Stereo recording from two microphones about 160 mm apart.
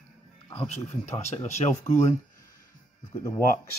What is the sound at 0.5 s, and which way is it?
Speech, 40° left (ahead or behind).